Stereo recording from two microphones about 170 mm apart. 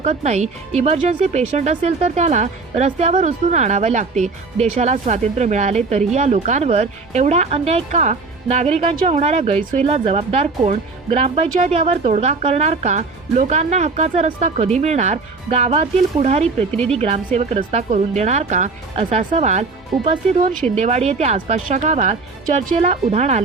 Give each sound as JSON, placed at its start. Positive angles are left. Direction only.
{"t": 0.0, "sound": "speech", "side_deg": -40}
{"t": 19.9, "sound": "speech", "side_deg": 0}
{"t": 20.7, "sound": "speech", "side_deg": -40}